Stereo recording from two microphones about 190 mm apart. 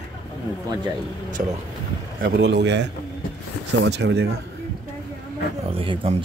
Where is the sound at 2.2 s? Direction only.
60° right (ahead or behind).